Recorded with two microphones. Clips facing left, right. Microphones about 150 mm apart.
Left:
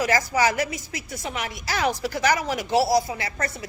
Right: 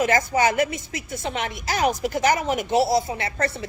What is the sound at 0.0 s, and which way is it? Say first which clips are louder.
A woman's voice: right 2 dB; 25° right (ahead or behind).